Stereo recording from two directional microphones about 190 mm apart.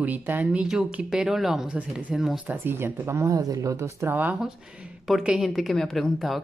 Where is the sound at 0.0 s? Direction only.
10° right (ahead or behind).